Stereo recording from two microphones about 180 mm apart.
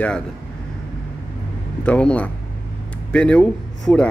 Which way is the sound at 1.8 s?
5° left (ahead or behind).